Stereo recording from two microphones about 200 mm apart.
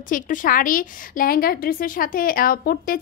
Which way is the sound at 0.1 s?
40° left (ahead or behind).